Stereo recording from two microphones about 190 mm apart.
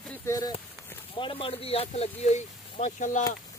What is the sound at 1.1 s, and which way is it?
Speech, 30° left (ahead or behind).